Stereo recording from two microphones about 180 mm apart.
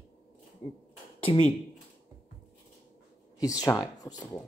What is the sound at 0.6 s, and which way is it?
Speech, 35° left (ahead or behind).